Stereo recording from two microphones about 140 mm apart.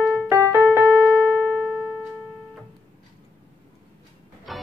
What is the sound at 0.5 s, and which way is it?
Keyboard, 15° right (ahead or behind).